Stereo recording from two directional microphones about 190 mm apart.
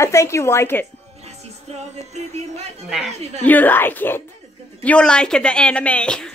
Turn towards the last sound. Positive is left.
turn(degrees=5)  # may be behind; listen again after turning